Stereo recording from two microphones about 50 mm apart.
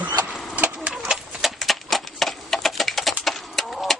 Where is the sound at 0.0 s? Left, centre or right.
Right.